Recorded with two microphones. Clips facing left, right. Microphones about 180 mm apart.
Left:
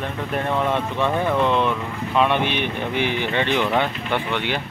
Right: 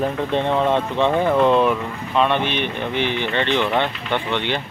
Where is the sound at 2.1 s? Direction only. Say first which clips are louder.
Right 1 dB; 10° left (ahead or behind).